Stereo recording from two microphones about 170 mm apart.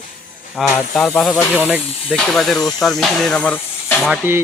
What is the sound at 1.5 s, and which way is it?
Speech, 10° right (ahead or behind).